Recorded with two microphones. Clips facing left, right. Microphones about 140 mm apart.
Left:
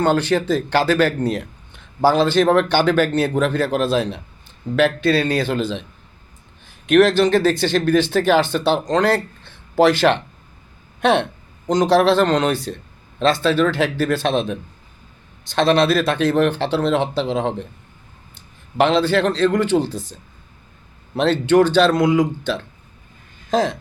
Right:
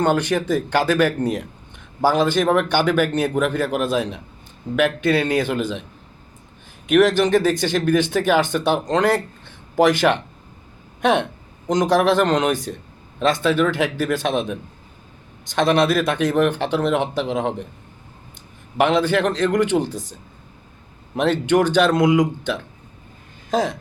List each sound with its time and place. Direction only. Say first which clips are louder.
0.0 s speech: left 2 dB; 15° right (ahead or behind)
6.8 s speech: left 2 dB; 10° right (ahead or behind)
18.8 s speech: left 1 dB; 15° right (ahead or behind)
21.2 s speech: left 3 dB; 15° right (ahead or behind)